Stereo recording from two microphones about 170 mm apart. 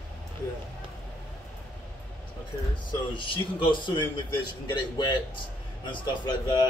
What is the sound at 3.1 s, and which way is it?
A man's voice, 30° left (ahead or behind).